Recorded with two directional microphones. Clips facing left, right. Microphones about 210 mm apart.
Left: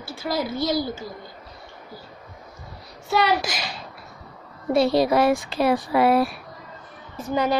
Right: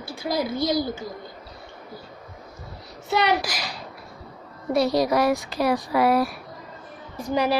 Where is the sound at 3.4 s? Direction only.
25° left (ahead or behind).